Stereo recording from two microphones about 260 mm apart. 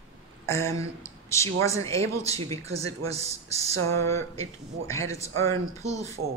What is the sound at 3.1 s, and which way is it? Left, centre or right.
Speech, right.